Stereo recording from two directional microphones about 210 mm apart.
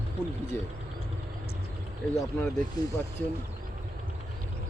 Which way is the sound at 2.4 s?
15° left (ahead or behind).